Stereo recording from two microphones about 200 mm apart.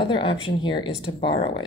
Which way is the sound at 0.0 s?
25° left (ahead or behind).